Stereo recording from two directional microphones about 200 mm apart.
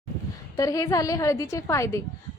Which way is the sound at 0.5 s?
15° left (ahead or behind).